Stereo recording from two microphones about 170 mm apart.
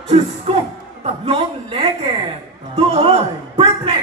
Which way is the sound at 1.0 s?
35° right (ahead or behind).